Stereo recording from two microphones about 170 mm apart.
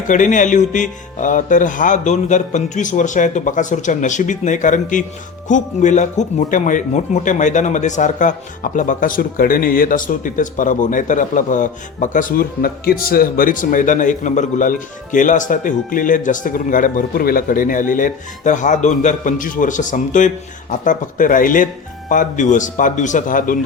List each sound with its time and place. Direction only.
0.1 s speech: 50° left (ahead or behind)